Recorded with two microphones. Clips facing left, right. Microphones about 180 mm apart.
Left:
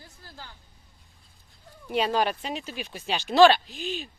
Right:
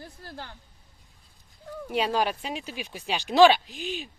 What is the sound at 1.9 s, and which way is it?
Speech, 5° right (ahead or behind).